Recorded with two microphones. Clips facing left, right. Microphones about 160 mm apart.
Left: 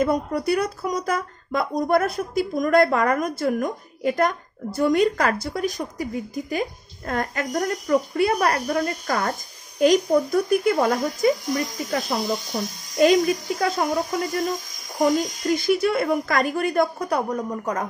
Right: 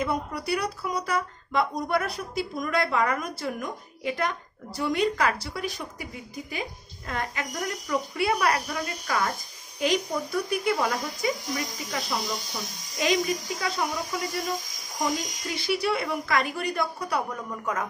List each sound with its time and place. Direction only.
0.0 s speech: 45° left (ahead or behind)